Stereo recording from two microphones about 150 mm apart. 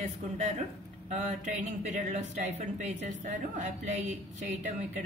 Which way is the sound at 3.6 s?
55° right (ahead or behind).